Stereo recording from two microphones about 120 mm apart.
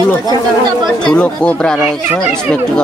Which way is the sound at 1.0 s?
10° left (ahead or behind).